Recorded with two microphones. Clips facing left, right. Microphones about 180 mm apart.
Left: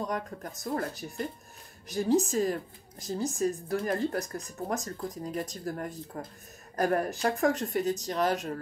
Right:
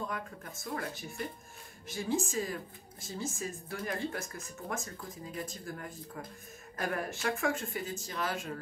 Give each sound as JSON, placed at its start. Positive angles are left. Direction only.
{"t": 0.0, "sound": "speech", "side_deg": 40}
{"t": 1.9, "sound": "speech", "side_deg": 40}